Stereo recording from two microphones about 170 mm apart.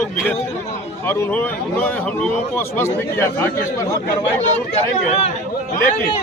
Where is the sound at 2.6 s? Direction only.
10° left (ahead or behind).